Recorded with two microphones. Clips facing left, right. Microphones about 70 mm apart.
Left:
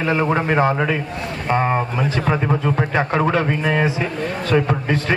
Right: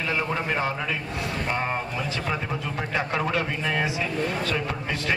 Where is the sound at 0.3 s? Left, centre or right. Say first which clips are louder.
Left 9 dB; left.